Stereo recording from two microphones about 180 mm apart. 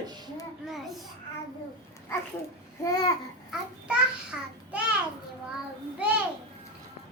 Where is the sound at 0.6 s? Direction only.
Centre (ahead or behind).